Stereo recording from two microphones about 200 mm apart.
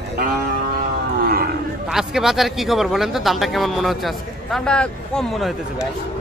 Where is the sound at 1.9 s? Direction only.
Centre (ahead or behind).